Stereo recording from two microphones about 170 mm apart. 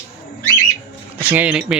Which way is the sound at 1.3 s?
10° right (ahead or behind).